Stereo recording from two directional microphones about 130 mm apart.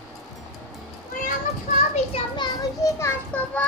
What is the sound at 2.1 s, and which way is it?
Children playing, 35° left (ahead or behind).